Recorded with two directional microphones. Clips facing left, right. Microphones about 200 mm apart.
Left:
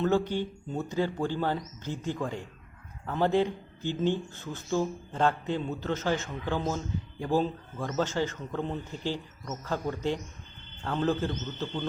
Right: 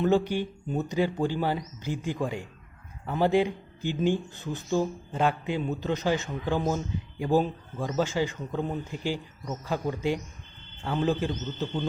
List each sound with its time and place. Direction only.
0.0 s speech: 15° right (ahead or behind)